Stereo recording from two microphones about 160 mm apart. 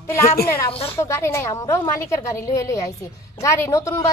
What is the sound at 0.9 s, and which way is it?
A woman's voice, 15° left (ahead or behind).